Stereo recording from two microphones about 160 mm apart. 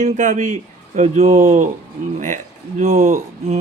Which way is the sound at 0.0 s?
50° right (ahead or behind).